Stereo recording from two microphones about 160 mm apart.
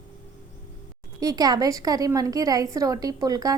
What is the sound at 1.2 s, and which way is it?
A woman's voice, 25° right (ahead or behind).